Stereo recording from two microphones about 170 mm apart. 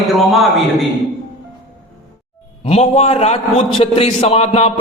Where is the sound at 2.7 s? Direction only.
40° left (ahead or behind).